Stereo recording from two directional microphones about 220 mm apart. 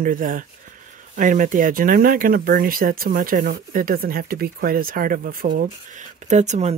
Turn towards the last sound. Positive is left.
turn(degrees=-30)  # may be behind; listen again after turning